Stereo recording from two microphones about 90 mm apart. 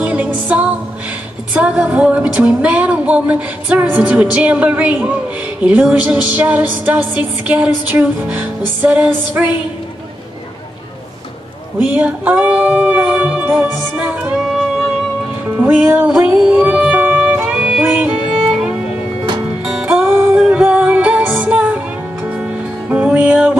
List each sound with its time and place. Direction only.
0.0 s music: 15° right (ahead or behind)
1.6 s a sound: 15° right (ahead or behind)
11.8 s a sound: 15° right (ahead or behind)
14.4 s music: 5° right (ahead or behind)
15.6 s music: 20° right (ahead or behind)
20.0 s music: 25° right (ahead or behind)
20.3 s music: 10° right (ahead or behind)